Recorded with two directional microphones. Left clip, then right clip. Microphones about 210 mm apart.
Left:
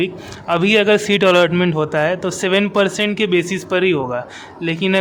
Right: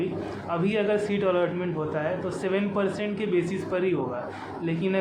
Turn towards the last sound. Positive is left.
turn(degrees=55)  # may be behind; listen again after turning